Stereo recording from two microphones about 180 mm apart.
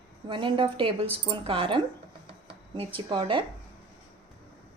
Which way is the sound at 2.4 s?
30° right (ahead or behind).